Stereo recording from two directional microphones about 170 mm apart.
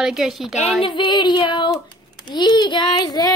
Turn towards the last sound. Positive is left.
turn(degrees=25)  # may be behind; listen again after turning